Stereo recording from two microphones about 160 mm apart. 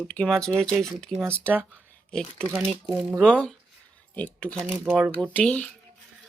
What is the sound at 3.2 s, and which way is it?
Speech, 5° left (ahead or behind).